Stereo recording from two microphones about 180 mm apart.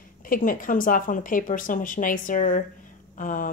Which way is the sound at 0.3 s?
50° left (ahead or behind).